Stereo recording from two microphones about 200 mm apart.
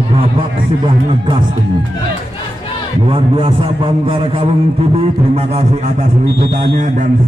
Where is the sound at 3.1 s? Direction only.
25° right (ahead or behind).